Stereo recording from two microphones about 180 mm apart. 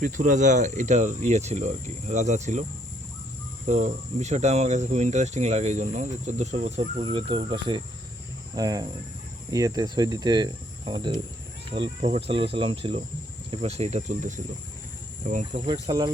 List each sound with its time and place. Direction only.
0.0 s speech: 45° right (ahead or behind)
3.7 s speech: 40° right (ahead or behind)
8.5 s cricket: 20° right (ahead or behind)
12.5 s speech: 30° right (ahead or behind)
15.3 s insect: 40° right (ahead or behind)
15.6 s cricket: 20° right (ahead or behind)